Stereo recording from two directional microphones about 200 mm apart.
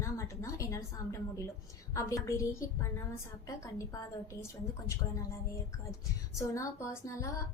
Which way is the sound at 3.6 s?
15° left (ahead or behind).